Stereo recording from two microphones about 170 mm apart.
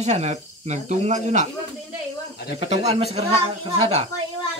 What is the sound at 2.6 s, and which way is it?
Speech, 40° right (ahead or behind).